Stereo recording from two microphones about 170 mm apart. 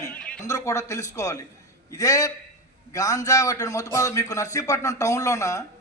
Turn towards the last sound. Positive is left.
turn(degrees=20)  # may be behind; listen again after turning